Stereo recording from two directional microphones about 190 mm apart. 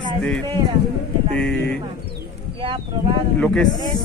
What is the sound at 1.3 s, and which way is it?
Speech, 5° left (ahead or behind).